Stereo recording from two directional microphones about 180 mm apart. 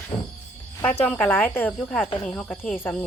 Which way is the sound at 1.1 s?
5° left (ahead or behind).